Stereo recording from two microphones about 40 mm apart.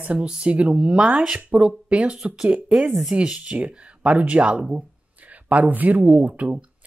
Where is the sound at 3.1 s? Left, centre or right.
Right.